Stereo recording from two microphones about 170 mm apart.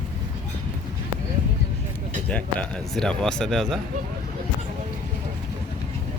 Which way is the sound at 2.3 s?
5° left (ahead or behind).